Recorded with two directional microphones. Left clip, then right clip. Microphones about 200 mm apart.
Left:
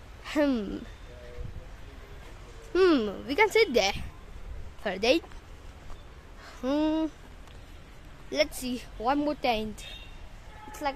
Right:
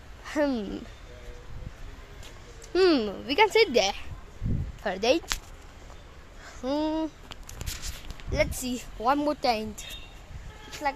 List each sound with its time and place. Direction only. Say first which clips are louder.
0.2 s a sound: even; 15° left (ahead or behind)
2.7 s speech: right 1 dB; 5° left (ahead or behind)
4.8 s a woman's voice: right 1 dB; 5° left (ahead or behind)
6.4 s a sound: left 1 dB; 15° left (ahead or behind)
8.3 s speech: even; 15° left (ahead or behind)
8.6 s speech: right 3 dB; centre (ahead or behind)